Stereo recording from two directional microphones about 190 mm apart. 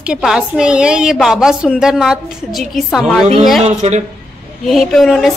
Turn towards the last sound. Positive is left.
turn(degrees=0)  # may be behind; listen again after turning